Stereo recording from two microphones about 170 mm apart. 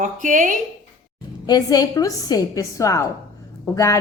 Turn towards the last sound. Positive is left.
turn(degrees=20)  # may be behind; listen again after turning